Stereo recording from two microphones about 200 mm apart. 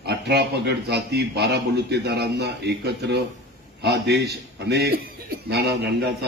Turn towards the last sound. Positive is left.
turn(degrees=-55)  # may be behind; listen again after turning